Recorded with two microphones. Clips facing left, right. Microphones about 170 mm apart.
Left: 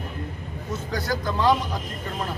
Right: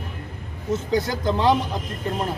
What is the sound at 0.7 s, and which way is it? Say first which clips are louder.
Speech: right 5 dB; 20° right (ahead or behind).